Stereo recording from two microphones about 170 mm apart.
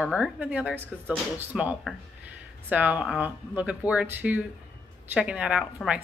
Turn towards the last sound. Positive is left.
turn(degrees=-5)  # may be behind; listen again after turning